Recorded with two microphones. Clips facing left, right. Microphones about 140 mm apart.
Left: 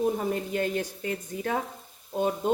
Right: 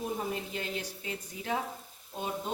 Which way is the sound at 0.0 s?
50° left (ahead or behind).